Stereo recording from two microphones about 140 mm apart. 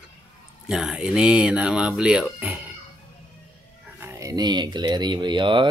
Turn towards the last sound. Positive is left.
turn(degrees=-35)  # may be behind; listen again after turning